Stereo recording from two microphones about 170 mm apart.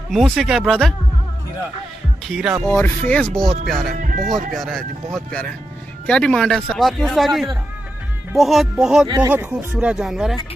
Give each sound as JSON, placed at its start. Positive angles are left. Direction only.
{"t": 0.1, "sound": "speech", "side_deg": 0}
{"t": 2.2, "sound": "speech", "side_deg": 0}
{"t": 2.6, "sound": "speech", "side_deg": 10}
{"t": 4.0, "sound": "speech", "side_deg": -50}
{"t": 4.5, "sound": "speech", "side_deg": 0}
{"t": 9.0, "sound": "speech", "side_deg": -25}
{"t": 9.3, "sound": "speech", "side_deg": -10}